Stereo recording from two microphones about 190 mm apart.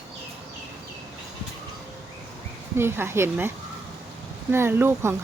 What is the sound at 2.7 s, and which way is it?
Speech, 10° right (ahead or behind).